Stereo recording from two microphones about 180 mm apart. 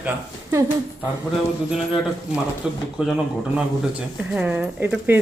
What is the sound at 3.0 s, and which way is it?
Speech, 5° right (ahead or behind).